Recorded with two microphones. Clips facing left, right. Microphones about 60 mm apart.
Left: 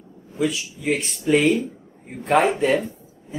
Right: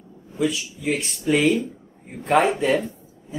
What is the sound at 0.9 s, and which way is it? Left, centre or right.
Speech, centre.